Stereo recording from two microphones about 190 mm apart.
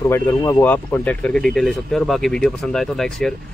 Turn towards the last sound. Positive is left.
turn(degrees=0)  # may be behind; listen again after turning